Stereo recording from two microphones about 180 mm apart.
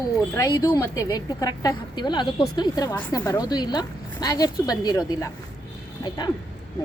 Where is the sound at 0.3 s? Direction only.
20° left (ahead or behind).